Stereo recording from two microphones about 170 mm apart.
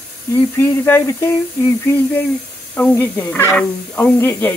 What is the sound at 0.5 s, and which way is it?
Speech, 15° left (ahead or behind).